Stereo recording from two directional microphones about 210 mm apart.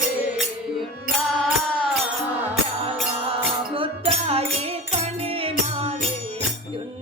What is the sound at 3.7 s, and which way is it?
Music, 25° right (ahead or behind).